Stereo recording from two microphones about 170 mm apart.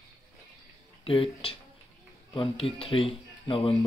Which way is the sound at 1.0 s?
30° left (ahead or behind).